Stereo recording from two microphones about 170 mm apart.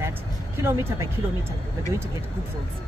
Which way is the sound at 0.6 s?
15° right (ahead or behind).